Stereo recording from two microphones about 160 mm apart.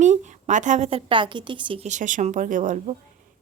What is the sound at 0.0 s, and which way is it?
A woman's voice, 50° right (ahead or behind).